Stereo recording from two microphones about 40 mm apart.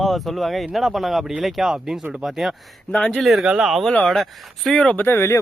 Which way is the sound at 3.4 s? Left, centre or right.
Centre.